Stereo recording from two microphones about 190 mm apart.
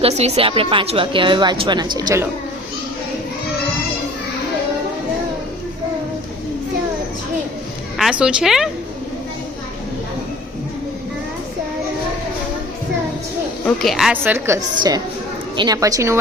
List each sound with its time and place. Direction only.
0.0 s a woman's voice: 35° right (ahead or behind)
7.9 s a woman's voice: 5° right (ahead or behind)
13.7 s a woman's voice: centre (ahead or behind); by 16.1 s 15° right (ahead or behind)